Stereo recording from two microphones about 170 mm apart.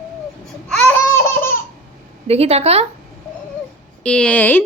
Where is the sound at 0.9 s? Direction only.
15° left (ahead or behind).